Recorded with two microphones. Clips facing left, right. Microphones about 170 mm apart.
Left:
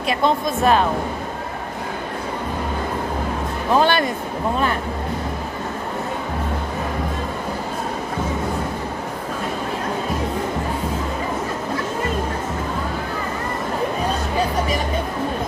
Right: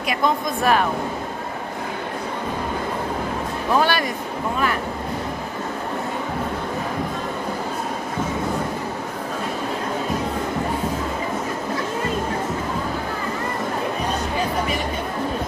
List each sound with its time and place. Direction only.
0.1 s speech: 25° left (ahead or behind)
3.7 s speech: 25° left (ahead or behind)